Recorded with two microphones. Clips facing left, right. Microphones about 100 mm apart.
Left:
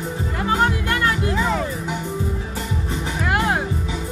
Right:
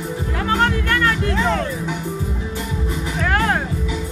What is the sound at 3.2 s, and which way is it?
Music, 15° left (ahead or behind).